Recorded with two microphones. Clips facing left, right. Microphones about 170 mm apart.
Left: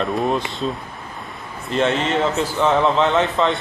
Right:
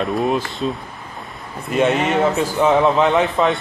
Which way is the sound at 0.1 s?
Centre (ahead or behind).